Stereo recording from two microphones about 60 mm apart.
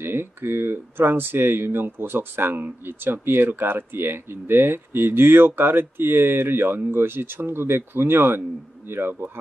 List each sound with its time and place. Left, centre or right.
0.0 s speech: right